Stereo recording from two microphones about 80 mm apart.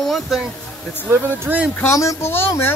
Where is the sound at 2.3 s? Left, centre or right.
Left.